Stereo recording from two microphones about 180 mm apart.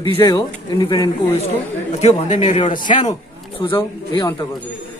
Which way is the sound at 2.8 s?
45° left (ahead or behind).